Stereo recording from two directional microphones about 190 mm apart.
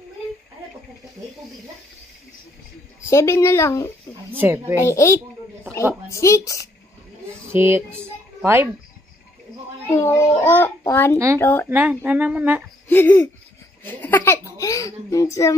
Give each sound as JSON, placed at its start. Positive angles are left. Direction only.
{"t": 3.1, "sound": "a child's voice", "side_deg": 15}
{"t": 4.4, "sound": "speech", "side_deg": -10}
{"t": 4.7, "sound": "a child's voice", "side_deg": 15}
{"t": 7.5, "sound": "speech", "side_deg": -15}
{"t": 9.8, "sound": "a child's voice", "side_deg": 10}
{"t": 11.7, "sound": "speech", "side_deg": -10}
{"t": 12.8, "sound": "a child's voice", "side_deg": 10}